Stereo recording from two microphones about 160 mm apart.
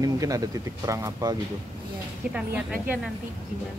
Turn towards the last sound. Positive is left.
turn(degrees=-10)  # may be behind; listen again after turning